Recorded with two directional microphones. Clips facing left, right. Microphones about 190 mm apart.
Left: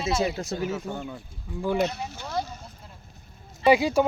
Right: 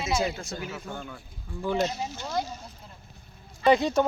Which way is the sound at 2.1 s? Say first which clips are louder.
Even; 5° left (ahead or behind).